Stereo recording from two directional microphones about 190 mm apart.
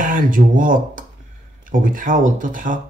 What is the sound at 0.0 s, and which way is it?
Speech, 45° right (ahead or behind).